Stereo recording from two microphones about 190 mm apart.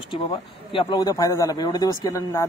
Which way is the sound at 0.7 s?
25° left (ahead or behind).